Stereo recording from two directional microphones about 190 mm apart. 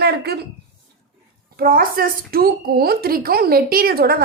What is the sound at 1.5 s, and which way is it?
A woman's voice, 50° right (ahead or behind).